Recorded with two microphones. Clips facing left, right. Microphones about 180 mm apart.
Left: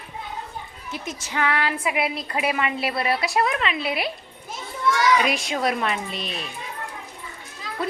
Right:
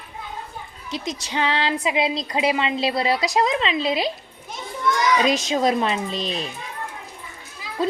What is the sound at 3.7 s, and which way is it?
Speech, 90° right.